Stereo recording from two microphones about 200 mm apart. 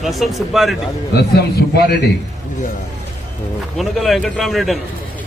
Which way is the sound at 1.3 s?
55° left (ahead or behind).